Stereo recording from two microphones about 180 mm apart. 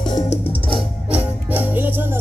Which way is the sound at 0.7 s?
5° right (ahead or behind).